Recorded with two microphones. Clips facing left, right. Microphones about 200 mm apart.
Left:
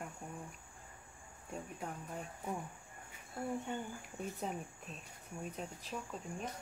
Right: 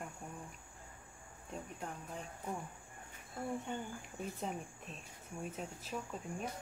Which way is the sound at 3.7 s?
Centre (ahead or behind).